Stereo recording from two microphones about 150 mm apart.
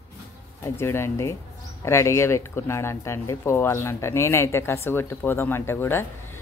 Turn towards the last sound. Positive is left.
turn(degrees=15)  # may be behind; listen again after turning